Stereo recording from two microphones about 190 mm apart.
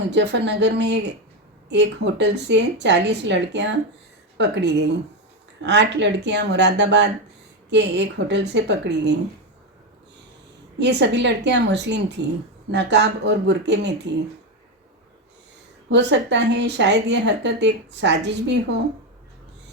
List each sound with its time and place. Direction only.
0.1 s a woman's voice: 65° right (ahead or behind)
10.8 s a woman's voice: 65° right (ahead or behind)
15.9 s a woman's voice: 65° right (ahead or behind)